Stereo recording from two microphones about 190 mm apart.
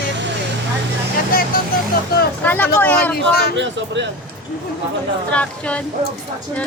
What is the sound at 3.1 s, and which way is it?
Speech, 55° left (ahead or behind).